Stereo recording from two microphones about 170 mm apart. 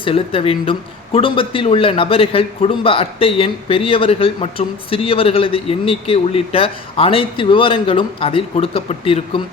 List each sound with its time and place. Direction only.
0.0 s a man's voice: 30° left (ahead or behind)